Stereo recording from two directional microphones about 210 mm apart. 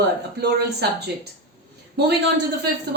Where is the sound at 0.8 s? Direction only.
50° right (ahead or behind).